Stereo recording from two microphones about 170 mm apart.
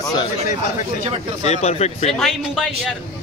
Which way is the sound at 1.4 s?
40° left (ahead or behind).